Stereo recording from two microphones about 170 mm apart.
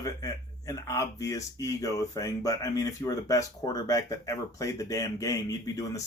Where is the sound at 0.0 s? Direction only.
20° left (ahead or behind).